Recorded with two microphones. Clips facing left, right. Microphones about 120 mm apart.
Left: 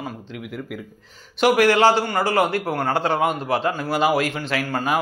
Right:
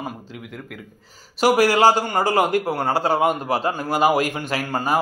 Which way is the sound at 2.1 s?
15° right (ahead or behind).